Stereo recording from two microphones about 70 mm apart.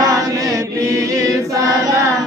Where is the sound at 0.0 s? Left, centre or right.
Right.